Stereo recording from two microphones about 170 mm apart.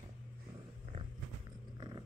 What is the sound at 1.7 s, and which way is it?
Cat, 30° right (ahead or behind).